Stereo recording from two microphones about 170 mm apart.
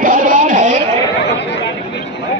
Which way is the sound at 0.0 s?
55° right (ahead or behind).